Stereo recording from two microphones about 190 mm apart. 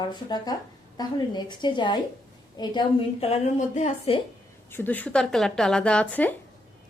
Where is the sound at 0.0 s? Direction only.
20° left (ahead or behind).